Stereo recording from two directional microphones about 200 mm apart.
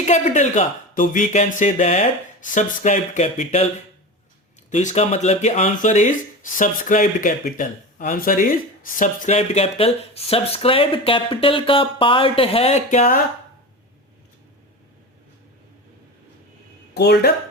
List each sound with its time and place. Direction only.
0.0 s speech: 35° left (ahead or behind)
4.7 s speech: 35° left (ahead or behind)
16.9 s speech: 55° left (ahead or behind)